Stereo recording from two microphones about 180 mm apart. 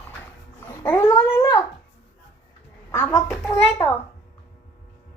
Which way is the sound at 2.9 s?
15° left (ahead or behind).